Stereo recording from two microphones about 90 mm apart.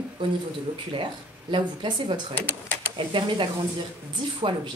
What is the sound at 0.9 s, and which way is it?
A woman's voice, 65° right (ahead or behind).